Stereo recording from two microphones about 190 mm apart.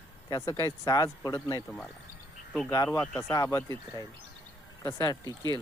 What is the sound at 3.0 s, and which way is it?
Speech, 5° left (ahead or behind).